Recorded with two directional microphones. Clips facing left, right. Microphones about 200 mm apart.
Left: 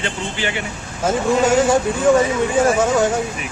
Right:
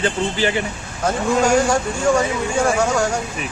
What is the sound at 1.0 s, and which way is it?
Speech, 5° left (ahead or behind).